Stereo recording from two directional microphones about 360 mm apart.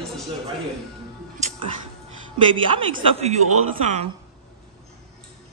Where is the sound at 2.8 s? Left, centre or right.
Centre.